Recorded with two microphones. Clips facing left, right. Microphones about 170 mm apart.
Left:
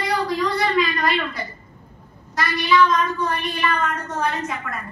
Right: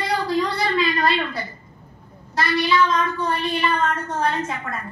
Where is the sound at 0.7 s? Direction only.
30° right (ahead or behind).